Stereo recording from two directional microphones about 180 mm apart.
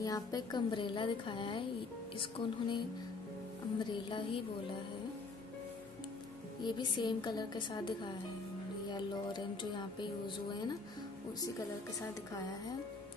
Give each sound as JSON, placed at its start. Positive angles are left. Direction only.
{"t": 0.0, "sound": "speech", "side_deg": 20}
{"t": 3.8, "sound": "speech", "side_deg": 25}
{"t": 6.6, "sound": "speech", "side_deg": 25}